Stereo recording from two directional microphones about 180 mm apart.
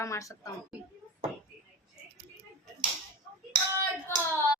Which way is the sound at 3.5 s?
25° right (ahead or behind).